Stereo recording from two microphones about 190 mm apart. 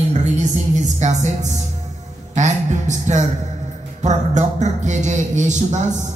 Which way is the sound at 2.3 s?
40° right (ahead or behind).